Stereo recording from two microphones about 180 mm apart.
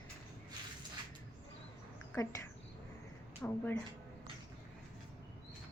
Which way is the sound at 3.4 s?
10° left (ahead or behind).